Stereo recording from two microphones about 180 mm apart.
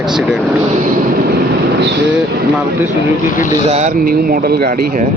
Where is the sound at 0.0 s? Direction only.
Centre (ahead or behind).